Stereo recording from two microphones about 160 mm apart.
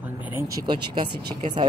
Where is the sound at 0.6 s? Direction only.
30° right (ahead or behind).